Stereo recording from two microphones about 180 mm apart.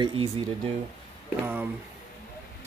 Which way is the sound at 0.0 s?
30° right (ahead or behind).